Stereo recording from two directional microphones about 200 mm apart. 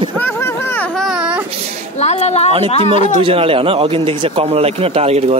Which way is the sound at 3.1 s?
30° right (ahead or behind).